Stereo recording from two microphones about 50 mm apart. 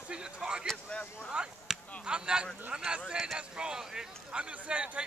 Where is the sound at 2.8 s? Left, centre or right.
Centre.